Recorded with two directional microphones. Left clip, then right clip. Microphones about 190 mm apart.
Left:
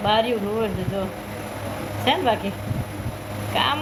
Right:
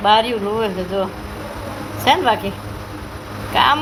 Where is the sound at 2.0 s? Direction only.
5° right (ahead or behind).